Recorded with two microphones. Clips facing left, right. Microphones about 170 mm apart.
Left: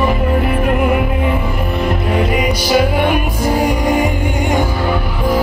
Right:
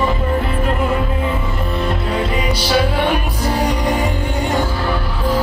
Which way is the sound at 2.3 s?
10° left (ahead or behind).